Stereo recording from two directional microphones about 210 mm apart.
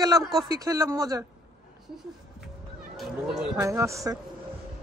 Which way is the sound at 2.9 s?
Centre (ahead or behind).